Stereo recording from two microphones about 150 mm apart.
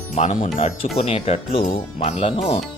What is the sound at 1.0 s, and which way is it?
Speech, 40° left (ahead or behind).